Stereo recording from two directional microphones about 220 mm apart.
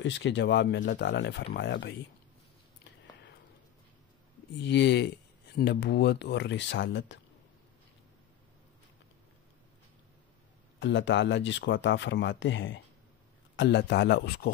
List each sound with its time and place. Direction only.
0.0 s speech: 55° left (ahead or behind)
4.6 s speech: 50° left (ahead or behind)
10.8 s speech: 55° left (ahead or behind)